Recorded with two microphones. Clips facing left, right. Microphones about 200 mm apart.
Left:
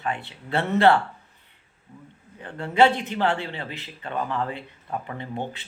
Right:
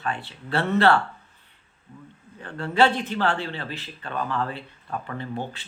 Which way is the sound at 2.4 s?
20° left (ahead or behind).